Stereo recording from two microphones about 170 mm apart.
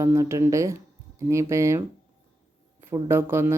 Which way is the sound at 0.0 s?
15° right (ahead or behind).